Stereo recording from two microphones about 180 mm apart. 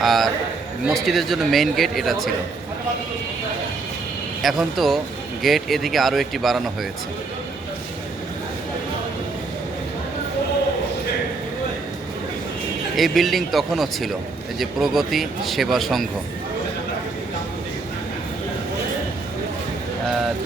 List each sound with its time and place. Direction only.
0.0 s a man's voice: centre (ahead or behind)
4.4 s speech: centre (ahead or behind)
13.0 s speech: centre (ahead or behind)